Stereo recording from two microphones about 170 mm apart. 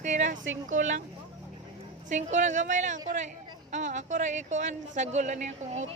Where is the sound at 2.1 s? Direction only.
45° right (ahead or behind).